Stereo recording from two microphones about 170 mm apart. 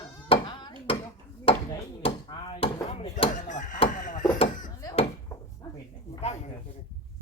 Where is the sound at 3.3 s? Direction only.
50° left (ahead or behind).